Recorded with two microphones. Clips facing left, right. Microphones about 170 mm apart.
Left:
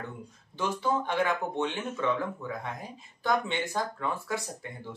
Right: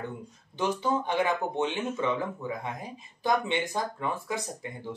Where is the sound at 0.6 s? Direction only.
20° right (ahead or behind).